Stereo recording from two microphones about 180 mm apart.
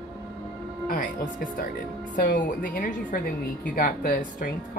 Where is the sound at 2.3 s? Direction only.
50° left (ahead or behind).